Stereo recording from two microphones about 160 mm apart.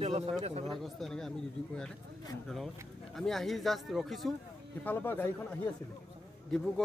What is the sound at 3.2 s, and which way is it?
Speech, centre (ahead or behind).